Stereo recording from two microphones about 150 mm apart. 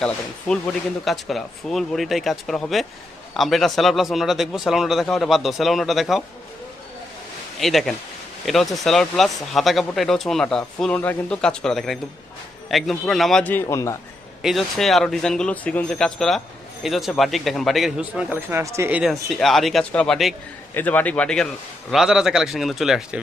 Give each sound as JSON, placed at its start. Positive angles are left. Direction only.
{"t": 0.0, "sound": "speech", "side_deg": 5}
{"t": 7.6, "sound": "speech", "side_deg": 0}
{"t": 13.4, "sound": "a man's voice", "side_deg": 15}
{"t": 14.4, "sound": "speech", "side_deg": 0}
{"t": 19.4, "sound": "speech", "side_deg": 0}
{"t": 20.7, "sound": "speech", "side_deg": 10}